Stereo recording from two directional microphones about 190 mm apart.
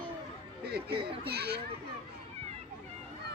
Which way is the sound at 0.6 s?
60° right (ahead or behind).